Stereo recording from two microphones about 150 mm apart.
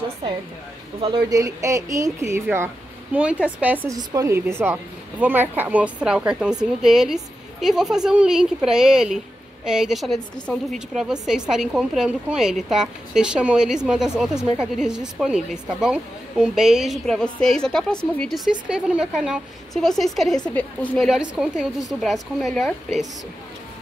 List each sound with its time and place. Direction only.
1.0 s speech: 25° right (ahead or behind); by 3.8 s 10° right (ahead or behind)
3.9 s a woman's voice: 25° right (ahead or behind); by 21.1 s 10° left (ahead or behind)
21.1 s a woman's voice: 5° right (ahead or behind)